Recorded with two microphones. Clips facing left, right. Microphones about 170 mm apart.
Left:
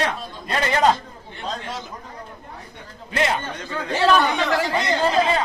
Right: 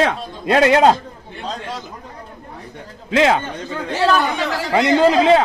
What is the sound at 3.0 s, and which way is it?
Speech, 90° right.